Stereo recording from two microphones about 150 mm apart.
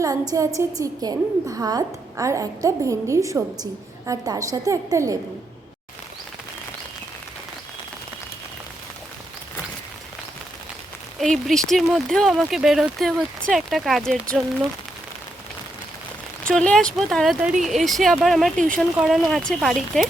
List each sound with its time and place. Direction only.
0.0 s a woman's voice: 25° right (ahead or behind)
11.2 s speech: centre (ahead or behind)
16.5 s speech: 5° left (ahead or behind)